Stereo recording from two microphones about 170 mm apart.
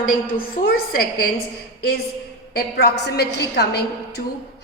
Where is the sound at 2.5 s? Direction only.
65° left (ahead or behind).